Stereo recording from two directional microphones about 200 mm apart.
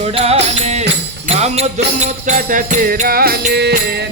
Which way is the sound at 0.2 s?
30° right (ahead or behind).